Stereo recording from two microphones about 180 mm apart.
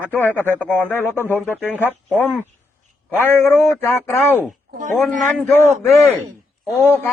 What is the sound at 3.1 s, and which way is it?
A man's voice, 10° left (ahead or behind).